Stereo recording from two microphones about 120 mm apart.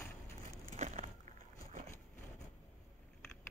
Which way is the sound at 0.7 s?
80° right.